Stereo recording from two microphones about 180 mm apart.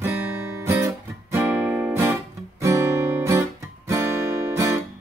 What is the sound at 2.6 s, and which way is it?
Guitar, 15° right (ahead or behind).